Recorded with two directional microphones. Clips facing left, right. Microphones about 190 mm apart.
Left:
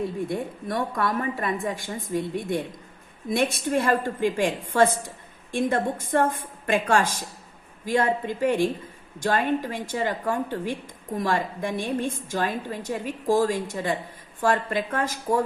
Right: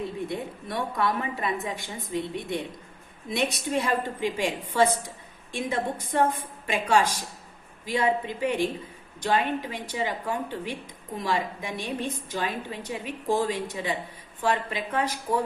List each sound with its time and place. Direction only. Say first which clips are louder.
0.3 s a woman's voice: left 4 dB; 50° left (ahead or behind)